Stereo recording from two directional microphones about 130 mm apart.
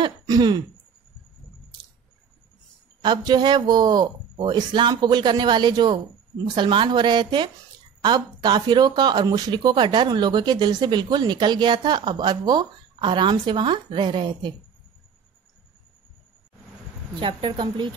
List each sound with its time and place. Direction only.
0.0 s throat clearing: 30° right (ahead or behind)
3.0 s speech: 35° right (ahead or behind)
17.2 s speech: 40° right (ahead or behind)